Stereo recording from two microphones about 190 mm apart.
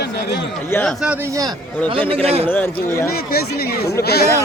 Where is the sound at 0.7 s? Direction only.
5° left (ahead or behind); by 1.6 s 20° right (ahead or behind).